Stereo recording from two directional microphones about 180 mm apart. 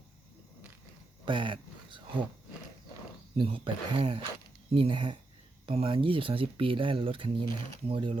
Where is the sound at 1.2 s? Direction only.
25° right (ahead or behind).